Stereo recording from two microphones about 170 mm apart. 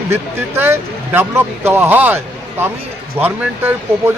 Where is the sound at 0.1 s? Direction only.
15° right (ahead or behind).